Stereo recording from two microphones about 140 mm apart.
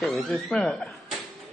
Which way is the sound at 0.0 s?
Centre (ahead or behind).